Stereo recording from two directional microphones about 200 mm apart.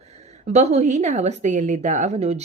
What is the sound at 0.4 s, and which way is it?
A woman's voice, 35° right (ahead or behind).